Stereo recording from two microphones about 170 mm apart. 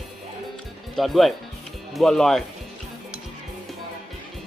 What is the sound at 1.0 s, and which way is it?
Speech, centre (ahead or behind).